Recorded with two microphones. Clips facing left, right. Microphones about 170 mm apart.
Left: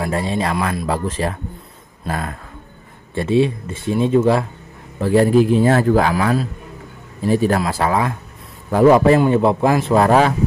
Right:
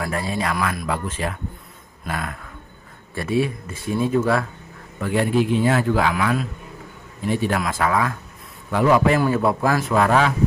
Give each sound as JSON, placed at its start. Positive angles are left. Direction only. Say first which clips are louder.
{"t": 0.0, "sound": "a man's voice", "louder": "left 4 dB", "side_deg": 25}
{"t": 5.0, "sound": "a man's voice", "louder": "left 7 dB", "side_deg": 35}
{"t": 8.6, "sound": "a man's voice", "louder": "left 6 dB", "side_deg": 40}
{"t": 9.2, "sound": "speech", "louder": "left 5 dB", "side_deg": 25}